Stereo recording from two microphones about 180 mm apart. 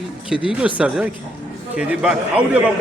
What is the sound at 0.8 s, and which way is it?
A man's voice, 5° right (ahead or behind).